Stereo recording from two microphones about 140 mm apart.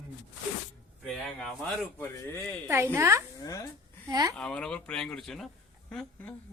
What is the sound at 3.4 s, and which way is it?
Speech, 25° left (ahead or behind).